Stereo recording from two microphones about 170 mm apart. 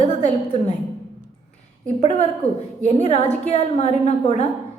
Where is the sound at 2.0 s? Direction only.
40° left (ahead or behind).